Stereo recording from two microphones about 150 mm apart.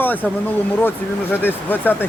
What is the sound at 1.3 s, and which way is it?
Speech, 15° left (ahead or behind).